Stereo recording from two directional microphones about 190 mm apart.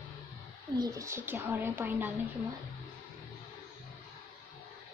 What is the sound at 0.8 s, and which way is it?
A woman's voice, 15° right (ahead or behind).